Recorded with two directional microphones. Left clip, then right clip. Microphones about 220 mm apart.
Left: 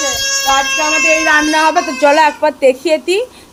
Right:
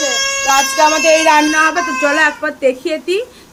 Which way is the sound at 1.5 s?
15° left (ahead or behind).